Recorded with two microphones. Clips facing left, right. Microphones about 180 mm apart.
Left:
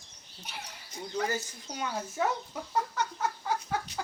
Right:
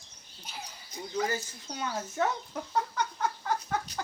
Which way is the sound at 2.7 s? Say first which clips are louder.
Even; 5° left (ahead or behind).